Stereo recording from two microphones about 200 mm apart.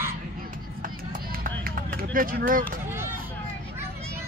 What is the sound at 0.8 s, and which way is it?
Run, 45° right (ahead or behind).